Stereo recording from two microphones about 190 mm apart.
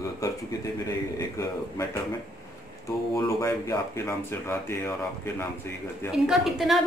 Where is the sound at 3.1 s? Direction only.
15° left (ahead or behind).